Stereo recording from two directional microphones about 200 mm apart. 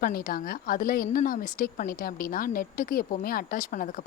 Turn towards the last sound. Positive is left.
turn(degrees=40)  # may be behind; listen again after turning